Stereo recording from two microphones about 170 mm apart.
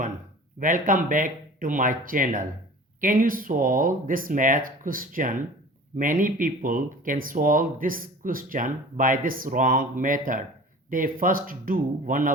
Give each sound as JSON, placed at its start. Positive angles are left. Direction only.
{"t": 0.6, "sound": "speech", "side_deg": -50}